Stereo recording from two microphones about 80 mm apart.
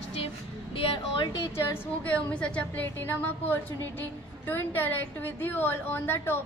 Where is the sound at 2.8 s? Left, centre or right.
Left.